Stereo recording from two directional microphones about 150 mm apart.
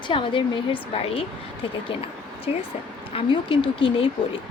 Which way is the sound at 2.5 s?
45° left (ahead or behind).